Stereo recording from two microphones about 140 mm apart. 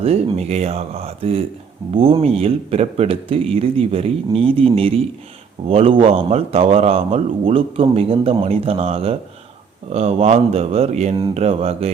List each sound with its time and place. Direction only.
0.0 s a man's voice: 45° right (ahead or behind)